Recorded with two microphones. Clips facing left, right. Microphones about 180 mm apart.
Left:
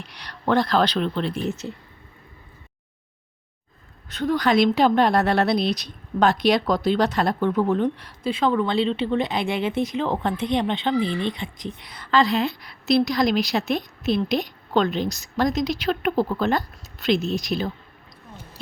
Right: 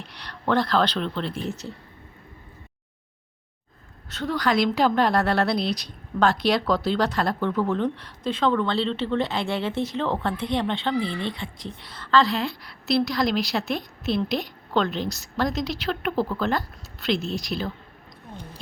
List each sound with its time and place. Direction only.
0.1 s speech: 15° left (ahead or behind)
4.1 s a woman's voice: 15° left (ahead or behind)